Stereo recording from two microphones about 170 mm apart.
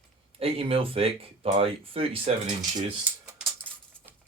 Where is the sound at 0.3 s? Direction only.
35° right (ahead or behind).